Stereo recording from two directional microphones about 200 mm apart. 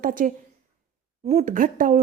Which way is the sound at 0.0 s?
40° right (ahead or behind).